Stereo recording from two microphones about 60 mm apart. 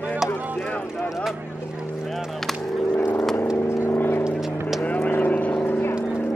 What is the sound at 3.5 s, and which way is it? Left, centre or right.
Vehicle, left.